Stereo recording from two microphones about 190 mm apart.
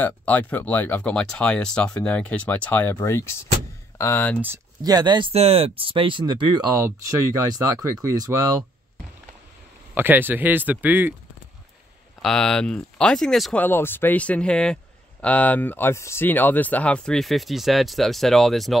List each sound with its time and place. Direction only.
0.0 s speech: 10° left (ahead or behind)
4.4 s speech: 15° right (ahead or behind)
9.9 s speech: 10° right (ahead or behind)
12.2 s speech: 5° left (ahead or behind)